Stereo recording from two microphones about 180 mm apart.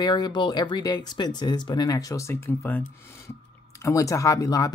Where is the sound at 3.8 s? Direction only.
15° left (ahead or behind).